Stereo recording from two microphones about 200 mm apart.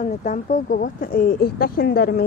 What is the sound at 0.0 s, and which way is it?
Speech, 40° left (ahead or behind).